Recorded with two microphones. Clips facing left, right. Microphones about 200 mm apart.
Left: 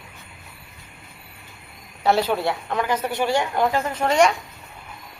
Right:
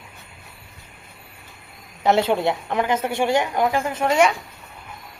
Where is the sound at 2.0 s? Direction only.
20° right (ahead or behind); by 4.4 s 5° right (ahead or behind).